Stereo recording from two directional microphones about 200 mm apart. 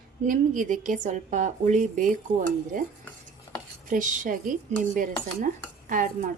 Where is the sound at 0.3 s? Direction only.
40° right (ahead or behind).